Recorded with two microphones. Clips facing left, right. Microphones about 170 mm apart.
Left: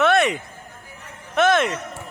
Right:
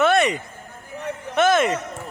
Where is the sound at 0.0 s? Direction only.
Centre (ahead or behind).